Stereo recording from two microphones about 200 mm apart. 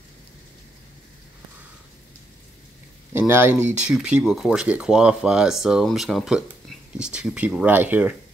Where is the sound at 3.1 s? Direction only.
10° right (ahead or behind).